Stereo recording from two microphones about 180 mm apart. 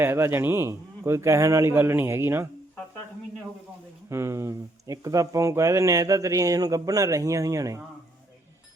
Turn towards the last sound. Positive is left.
turn(degrees=-20)  # may be behind; listen again after turning